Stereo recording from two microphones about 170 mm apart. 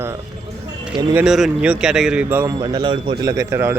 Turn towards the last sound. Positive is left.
turn(degrees=-15)  # may be behind; listen again after turning